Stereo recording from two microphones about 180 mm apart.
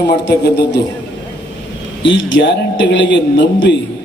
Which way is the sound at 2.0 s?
90° left.